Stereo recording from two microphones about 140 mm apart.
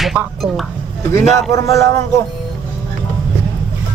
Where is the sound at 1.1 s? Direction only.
25° left (ahead or behind).